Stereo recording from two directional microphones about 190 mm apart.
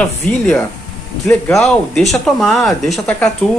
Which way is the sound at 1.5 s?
Centre (ahead or behind).